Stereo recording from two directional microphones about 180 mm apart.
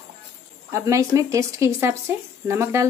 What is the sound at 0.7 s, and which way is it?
Speech, 15° right (ahead or behind).